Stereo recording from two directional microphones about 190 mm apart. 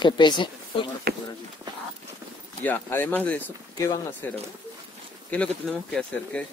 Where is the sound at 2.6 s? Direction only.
10° left (ahead or behind).